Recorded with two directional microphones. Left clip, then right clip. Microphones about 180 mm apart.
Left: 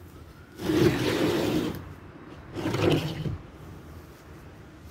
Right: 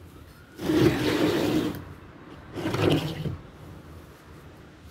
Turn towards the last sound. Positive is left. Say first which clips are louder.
# right 1 dB
turn(degrees=-20)  # may be behind; listen again after turning